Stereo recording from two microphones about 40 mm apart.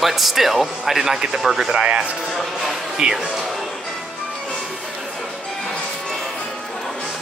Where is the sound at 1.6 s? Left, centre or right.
Centre.